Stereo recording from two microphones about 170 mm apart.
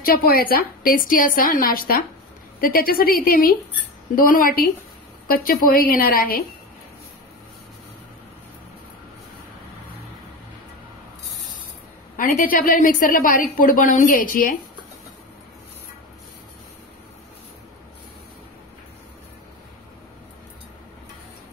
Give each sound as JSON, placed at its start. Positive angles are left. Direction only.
{"t": 0.0, "sound": "a woman's voice", "side_deg": 60}
{"t": 12.2, "sound": "a woman's voice", "side_deg": 50}